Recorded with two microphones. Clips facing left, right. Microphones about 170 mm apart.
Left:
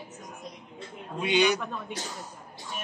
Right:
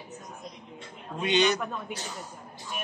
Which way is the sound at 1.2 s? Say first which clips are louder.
Even; 10° left (ahead or behind).